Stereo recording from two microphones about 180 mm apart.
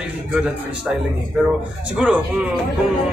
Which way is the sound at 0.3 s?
5° right (ahead or behind).